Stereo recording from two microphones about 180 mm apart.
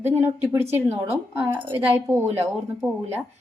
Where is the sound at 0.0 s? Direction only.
15° right (ahead or behind).